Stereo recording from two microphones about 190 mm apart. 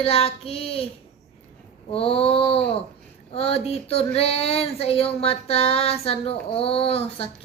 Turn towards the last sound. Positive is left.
turn(degrees=30)  # may be behind; listen again after turning